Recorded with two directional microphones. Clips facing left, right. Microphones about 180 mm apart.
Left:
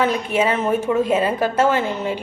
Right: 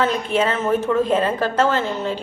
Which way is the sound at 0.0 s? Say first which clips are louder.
Left 1 dB; 10° left (ahead or behind).